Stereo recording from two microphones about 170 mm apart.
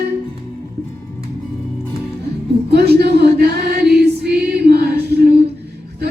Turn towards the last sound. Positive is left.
turn(degrees=-70)  # may be behind; listen again after turning